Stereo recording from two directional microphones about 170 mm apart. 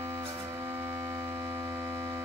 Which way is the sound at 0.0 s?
15° right (ahead or behind).